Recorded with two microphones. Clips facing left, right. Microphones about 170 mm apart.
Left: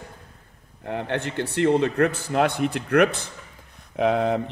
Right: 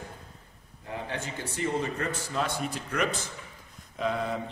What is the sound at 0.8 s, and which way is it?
A man's voice, 65° left (ahead or behind).